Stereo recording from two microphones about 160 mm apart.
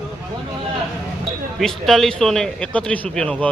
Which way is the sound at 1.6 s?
Centre (ahead or behind).